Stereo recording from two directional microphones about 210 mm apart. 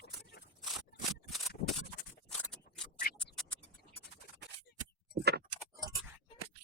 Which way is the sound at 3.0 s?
45° left (ahead or behind).